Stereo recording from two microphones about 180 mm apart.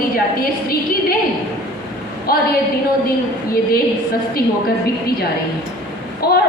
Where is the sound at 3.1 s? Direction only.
55° left (ahead or behind).